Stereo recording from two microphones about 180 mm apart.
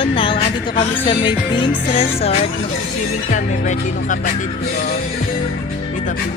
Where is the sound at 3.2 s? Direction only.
45° left (ahead or behind).